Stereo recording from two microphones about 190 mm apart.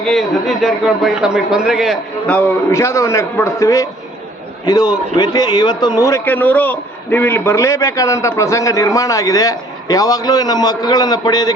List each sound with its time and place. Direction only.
0.0 s a man's voice: centre (ahead or behind); by 11.5 s 20° left (ahead or behind)